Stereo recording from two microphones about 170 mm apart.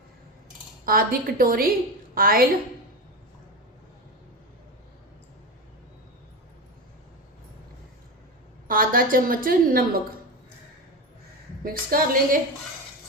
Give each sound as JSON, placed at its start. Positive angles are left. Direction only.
{"t": 0.9, "sound": "a woman's voice", "side_deg": -60}
{"t": 8.6, "sound": "a woman's voice", "side_deg": -55}
{"t": 11.6, "sound": "a woman's voice", "side_deg": -60}